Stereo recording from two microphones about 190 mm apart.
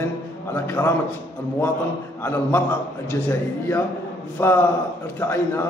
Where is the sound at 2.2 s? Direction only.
10° left (ahead or behind).